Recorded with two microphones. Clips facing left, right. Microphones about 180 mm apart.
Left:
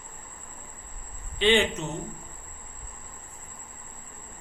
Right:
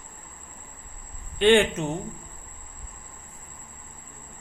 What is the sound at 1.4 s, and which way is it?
Speech, 50° right (ahead or behind).